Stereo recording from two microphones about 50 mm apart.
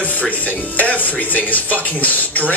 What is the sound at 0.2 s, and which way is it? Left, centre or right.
A man's voice, left.